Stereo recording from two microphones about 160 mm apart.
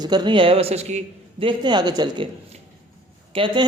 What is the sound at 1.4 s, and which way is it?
Speech, 25° right (ahead or behind).